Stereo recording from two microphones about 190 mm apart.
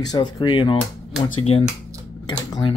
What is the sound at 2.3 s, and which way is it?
Speech, 20° left (ahead or behind).